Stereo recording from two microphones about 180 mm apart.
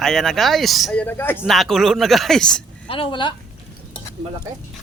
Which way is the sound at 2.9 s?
30° left (ahead or behind).